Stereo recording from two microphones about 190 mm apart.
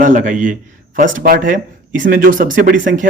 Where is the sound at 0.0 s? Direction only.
40° right (ahead or behind).